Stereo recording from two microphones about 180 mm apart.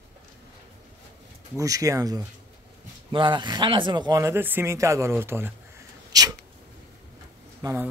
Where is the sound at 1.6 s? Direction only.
20° right (ahead or behind).